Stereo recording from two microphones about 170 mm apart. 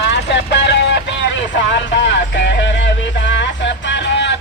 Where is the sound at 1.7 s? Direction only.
90° left.